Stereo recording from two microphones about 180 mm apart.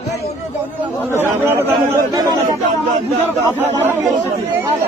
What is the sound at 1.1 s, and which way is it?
Speech, 10° right (ahead or behind).